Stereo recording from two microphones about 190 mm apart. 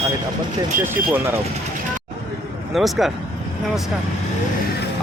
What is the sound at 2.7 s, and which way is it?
Speech, centre (ahead or behind).